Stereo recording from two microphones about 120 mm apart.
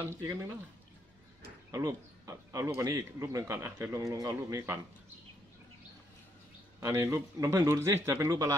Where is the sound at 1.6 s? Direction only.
30° right (ahead or behind).